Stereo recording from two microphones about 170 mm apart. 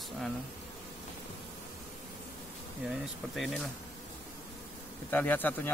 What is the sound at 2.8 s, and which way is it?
Speech, centre (ahead or behind).